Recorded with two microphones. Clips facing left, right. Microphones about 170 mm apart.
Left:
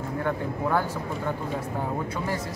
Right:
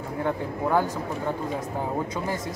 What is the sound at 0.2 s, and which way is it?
Speech, 15° right (ahead or behind).